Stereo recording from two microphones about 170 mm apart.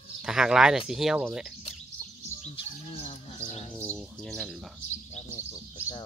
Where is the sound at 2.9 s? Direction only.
35° left (ahead or behind).